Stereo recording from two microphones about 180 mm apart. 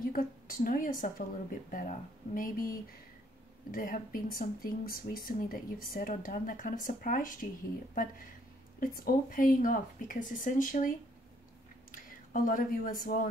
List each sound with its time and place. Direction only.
0.1 s a woman's voice: 50° left (ahead or behind)
3.7 s speech: 50° left (ahead or behind)
11.9 s speech: 50° left (ahead or behind)